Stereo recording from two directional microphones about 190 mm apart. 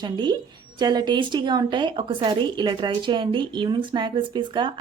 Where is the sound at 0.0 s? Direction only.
25° right (ahead or behind).